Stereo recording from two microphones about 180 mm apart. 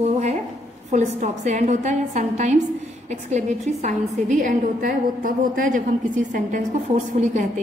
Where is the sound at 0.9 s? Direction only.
40° right (ahead or behind).